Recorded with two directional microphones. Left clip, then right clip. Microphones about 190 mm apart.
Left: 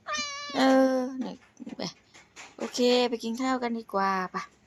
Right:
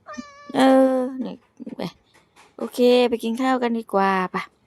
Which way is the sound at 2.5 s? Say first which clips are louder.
Right 7 dB; 30° right (ahead or behind).